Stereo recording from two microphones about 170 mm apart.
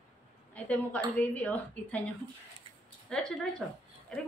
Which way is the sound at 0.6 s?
10° left (ahead or behind).